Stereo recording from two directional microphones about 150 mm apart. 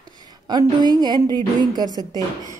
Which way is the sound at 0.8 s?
30° right (ahead or behind).